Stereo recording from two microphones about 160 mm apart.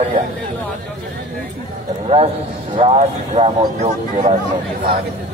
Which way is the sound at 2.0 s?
40° right (ahead or behind).